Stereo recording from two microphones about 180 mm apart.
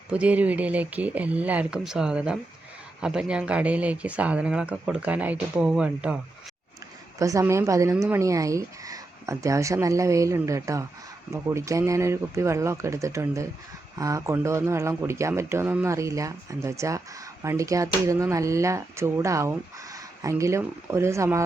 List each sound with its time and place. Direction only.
0.1 s speech: 5° right (ahead or behind)
7.2 s speech: 15° right (ahead or behind)